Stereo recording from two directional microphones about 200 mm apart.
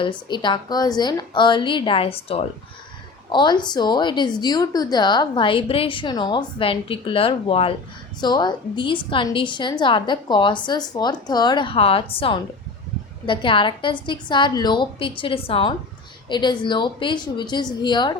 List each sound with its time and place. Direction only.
0.3 s speech: 25° left (ahead or behind)